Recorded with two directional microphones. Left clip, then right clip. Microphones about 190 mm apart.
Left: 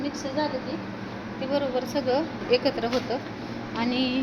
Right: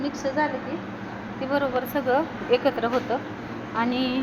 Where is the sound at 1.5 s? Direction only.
Centre (ahead or behind).